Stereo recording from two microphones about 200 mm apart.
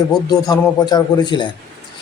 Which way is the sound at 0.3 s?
20° left (ahead or behind).